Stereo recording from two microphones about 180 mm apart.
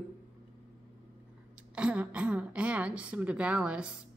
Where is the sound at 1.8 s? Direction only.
5° right (ahead or behind).